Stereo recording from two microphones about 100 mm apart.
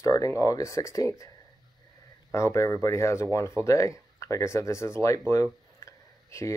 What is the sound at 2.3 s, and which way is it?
Speech, 30° left (ahead or behind).